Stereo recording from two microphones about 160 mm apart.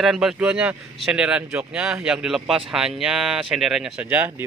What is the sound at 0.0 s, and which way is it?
Speech, centre (ahead or behind).